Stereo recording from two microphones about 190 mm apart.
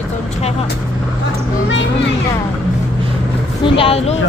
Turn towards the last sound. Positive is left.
turn(degrees=30)  # may be behind; listen again after turning